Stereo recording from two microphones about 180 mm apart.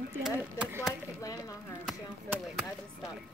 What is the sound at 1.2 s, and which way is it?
Speech, 20° left (ahead or behind).